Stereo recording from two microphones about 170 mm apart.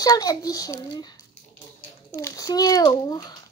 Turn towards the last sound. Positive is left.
turn(degrees=25)  # may be behind; listen again after turning